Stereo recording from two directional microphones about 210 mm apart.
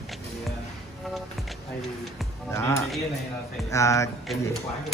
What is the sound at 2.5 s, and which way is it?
Speech, 15° left (ahead or behind).